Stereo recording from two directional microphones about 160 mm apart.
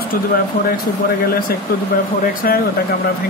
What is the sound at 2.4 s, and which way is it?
Speech, 65° left (ahead or behind).